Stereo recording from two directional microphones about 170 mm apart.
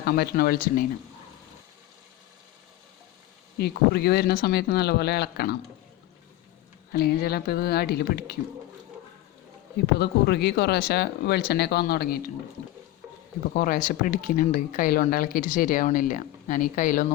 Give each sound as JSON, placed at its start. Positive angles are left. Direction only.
{"t": 0.0, "sound": "speech", "side_deg": 65}
{"t": 3.6, "sound": "speech", "side_deg": 70}
{"t": 6.9, "sound": "speech", "side_deg": 65}
{"t": 9.8, "sound": "speech", "side_deg": 70}
{"t": 13.5, "sound": "speech", "side_deg": 55}